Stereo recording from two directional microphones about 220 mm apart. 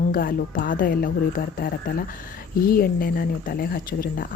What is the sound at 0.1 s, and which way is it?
Speech, 40° left (ahead or behind).